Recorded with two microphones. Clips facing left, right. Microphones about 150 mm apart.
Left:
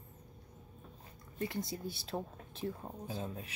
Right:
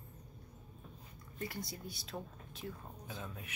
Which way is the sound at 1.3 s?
25° left (ahead or behind).